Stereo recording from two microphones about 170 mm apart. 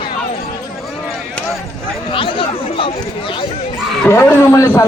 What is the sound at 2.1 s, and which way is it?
Speech, 30° left (ahead or behind).